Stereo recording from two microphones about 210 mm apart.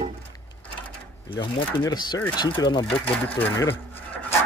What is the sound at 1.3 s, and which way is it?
Speech, 25° left (ahead or behind).